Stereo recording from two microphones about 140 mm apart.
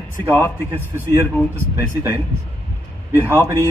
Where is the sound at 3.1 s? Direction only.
20° left (ahead or behind).